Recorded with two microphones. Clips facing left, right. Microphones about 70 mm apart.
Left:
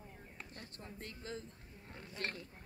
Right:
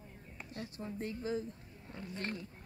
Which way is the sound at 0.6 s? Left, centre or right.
Centre.